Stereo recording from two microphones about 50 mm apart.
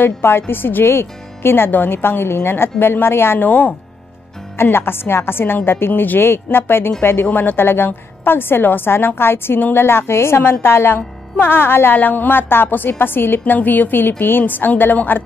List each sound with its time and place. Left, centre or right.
0.0 s a woman's voice: left
3.3 s a woman's voice: left
4.6 s a woman's voice: left